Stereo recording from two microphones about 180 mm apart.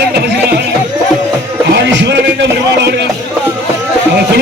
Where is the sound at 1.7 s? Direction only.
80° right.